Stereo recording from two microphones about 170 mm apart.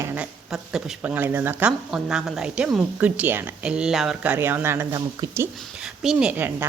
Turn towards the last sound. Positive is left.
turn(degrees=-10)  # may be behind; listen again after turning